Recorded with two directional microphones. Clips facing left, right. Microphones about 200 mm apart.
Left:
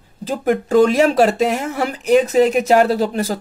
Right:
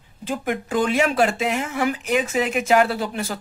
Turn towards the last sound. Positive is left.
turn(degrees=40)  # may be behind; listen again after turning